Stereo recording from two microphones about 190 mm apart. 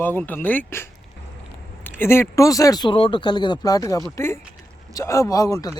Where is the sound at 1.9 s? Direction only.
10° left (ahead or behind).